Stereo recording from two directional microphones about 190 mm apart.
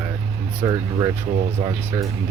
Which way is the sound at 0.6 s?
20° right (ahead or behind).